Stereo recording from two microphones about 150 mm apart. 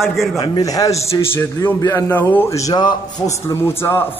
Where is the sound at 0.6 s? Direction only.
25° left (ahead or behind).